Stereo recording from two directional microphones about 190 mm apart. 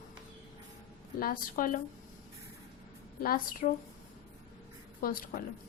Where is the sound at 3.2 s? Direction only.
50° left (ahead or behind).